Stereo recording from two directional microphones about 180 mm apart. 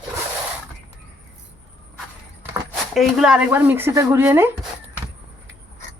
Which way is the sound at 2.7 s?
Centre (ahead or behind).